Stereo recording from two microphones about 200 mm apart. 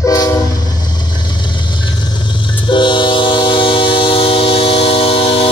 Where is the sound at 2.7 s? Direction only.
25° left (ahead or behind).